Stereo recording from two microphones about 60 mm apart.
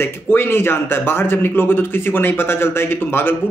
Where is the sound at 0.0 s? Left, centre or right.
Left.